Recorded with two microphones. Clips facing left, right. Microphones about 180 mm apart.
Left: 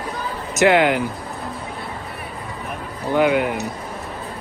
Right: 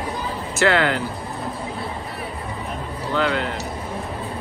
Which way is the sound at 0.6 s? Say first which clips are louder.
Left 4 dB; 15° left (ahead or behind).